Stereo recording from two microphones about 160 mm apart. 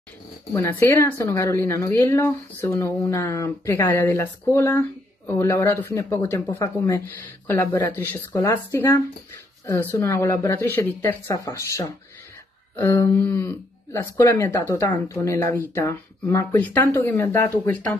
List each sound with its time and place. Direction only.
0.5 s a woman's voice: 15° left (ahead or behind)